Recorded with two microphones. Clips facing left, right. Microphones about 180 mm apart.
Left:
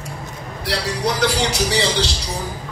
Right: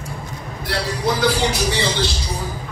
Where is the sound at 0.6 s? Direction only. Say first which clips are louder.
Even; 75° left (ahead or behind).